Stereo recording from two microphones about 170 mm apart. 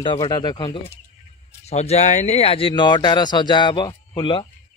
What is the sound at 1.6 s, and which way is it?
Speech, 40° left (ahead or behind).